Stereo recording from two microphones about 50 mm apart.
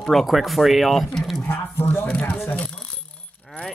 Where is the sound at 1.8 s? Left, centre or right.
Left.